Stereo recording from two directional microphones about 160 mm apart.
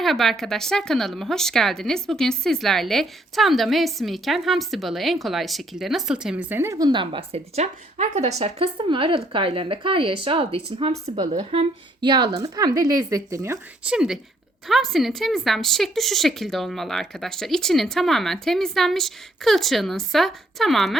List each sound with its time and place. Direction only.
0.0 s speech: centre (ahead or behind); by 11.7 s 40° right (ahead or behind)
11.9 s speech: 25° right (ahead or behind)
13.8 s speech: 5° right (ahead or behind)